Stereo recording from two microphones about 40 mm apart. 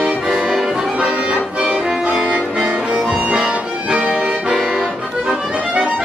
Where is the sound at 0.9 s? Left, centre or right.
Right.